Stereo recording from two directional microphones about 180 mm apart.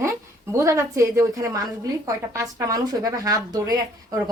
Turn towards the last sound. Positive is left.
turn(degrees=-20)  # may be behind; listen again after turning